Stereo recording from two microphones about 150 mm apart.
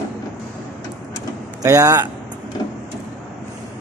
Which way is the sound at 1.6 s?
20° right (ahead or behind).